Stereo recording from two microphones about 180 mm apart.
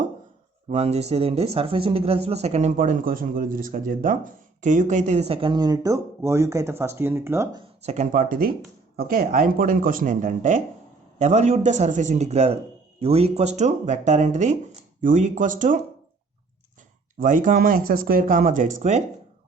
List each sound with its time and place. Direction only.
0.7 s speech: 35° right (ahead or behind); by 7.4 s 15° right (ahead or behind)
7.8 s speech: 40° right (ahead or behind)
17.2 s speech: 45° right (ahead or behind)